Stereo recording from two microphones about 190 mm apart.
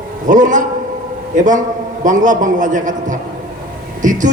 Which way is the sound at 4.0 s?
40° right (ahead or behind).